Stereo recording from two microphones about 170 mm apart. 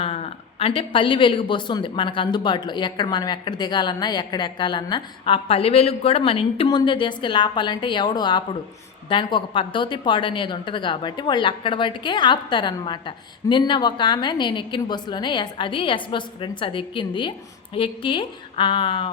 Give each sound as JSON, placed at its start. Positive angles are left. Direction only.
{"t": 0.0, "sound": "a woman's voice", "side_deg": 35}